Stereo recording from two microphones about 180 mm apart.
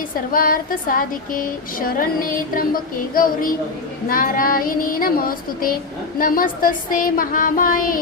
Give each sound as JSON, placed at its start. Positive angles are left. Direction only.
{"t": 0.3, "sound": "music", "side_deg": 50}